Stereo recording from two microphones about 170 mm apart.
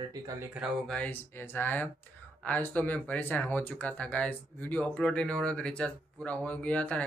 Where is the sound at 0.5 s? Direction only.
5° left (ahead or behind).